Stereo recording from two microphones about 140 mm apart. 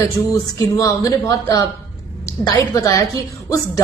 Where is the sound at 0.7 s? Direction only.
25° left (ahead or behind).